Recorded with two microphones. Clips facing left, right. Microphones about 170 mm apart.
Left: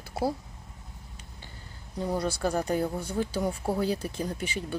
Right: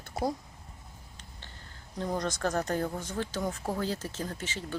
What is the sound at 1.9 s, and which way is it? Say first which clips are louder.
Speech: left 3 dB; 10° left (ahead or behind).